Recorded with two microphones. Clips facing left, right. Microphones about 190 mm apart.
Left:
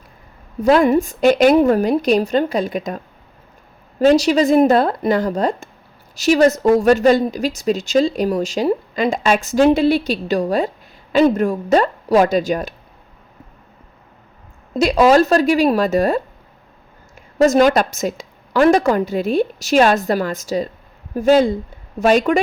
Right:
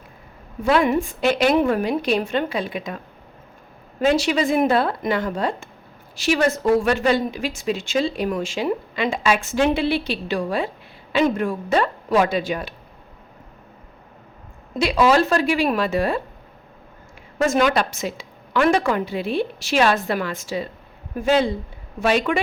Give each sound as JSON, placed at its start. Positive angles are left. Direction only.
{"t": 0.6, "sound": "speech", "side_deg": 40}
{"t": 4.0, "sound": "speech", "side_deg": 40}
{"t": 14.8, "sound": "a woman's voice", "side_deg": 45}
{"t": 17.3, "sound": "a woman's voice", "side_deg": 40}